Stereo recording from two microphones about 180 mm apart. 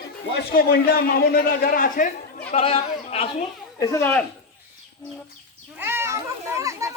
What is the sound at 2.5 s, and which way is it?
Speech, 35° left (ahead or behind).